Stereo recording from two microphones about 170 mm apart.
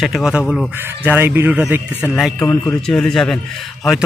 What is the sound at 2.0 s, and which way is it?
A man's voice, 5° left (ahead or behind).